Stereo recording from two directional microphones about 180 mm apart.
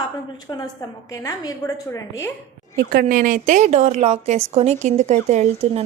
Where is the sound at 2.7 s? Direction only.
55° right (ahead or behind).